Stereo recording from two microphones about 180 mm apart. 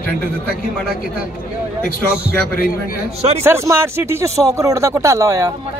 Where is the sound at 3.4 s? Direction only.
15° right (ahead or behind).